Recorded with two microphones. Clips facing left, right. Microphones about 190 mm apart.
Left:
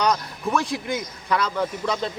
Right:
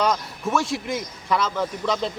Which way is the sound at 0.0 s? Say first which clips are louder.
Even; centre (ahead or behind).